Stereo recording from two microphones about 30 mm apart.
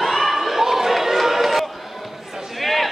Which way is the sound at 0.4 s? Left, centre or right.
Centre.